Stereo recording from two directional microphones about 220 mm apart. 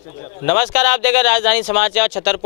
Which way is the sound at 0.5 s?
10° left (ahead or behind).